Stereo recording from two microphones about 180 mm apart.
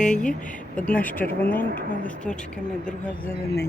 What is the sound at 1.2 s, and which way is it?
Speech, 55° left (ahead or behind).